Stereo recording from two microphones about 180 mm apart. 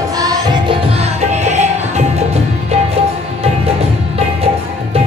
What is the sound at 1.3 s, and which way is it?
Music, 40° right (ahead or behind).